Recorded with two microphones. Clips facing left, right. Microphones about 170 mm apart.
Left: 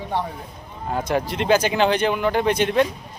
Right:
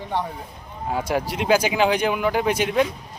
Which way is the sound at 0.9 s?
10° right (ahead or behind).